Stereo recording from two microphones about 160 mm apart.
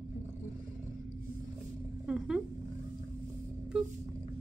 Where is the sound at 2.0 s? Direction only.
5° right (ahead or behind).